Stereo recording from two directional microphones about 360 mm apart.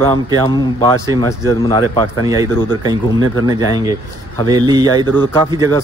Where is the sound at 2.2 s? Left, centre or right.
Centre.